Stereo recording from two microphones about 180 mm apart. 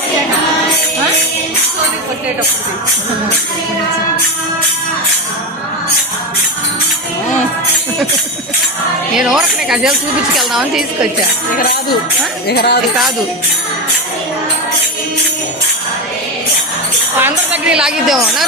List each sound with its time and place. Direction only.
9.1 s speech: 5° right (ahead or behind)
11.5 s speech: 55° left (ahead or behind)
17.2 s speech: 10° right (ahead or behind)